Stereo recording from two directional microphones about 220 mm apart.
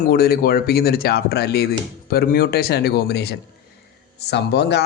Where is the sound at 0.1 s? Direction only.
45° left (ahead or behind).